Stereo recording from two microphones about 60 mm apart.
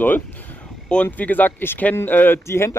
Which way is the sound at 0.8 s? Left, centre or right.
Centre.